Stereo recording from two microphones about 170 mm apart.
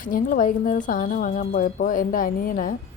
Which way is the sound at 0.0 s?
55° left (ahead or behind).